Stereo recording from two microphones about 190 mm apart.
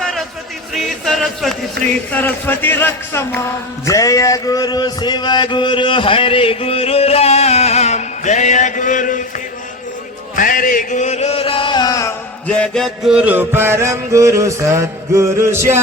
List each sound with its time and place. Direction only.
0.0 s a sound: centre (ahead or behind)
0.7 s music: centre (ahead or behind)
2.1 s a man's voice: 10° left (ahead or behind)
3.8 s music: 15° left (ahead or behind); by 9.2 s 45° left (ahead or behind)
10.3 s chant: 45° left (ahead or behind); by 12.1 s 20° left (ahead or behind)
12.5 s music: 5° left (ahead or behind); by 15.8 s 15° right (ahead or behind)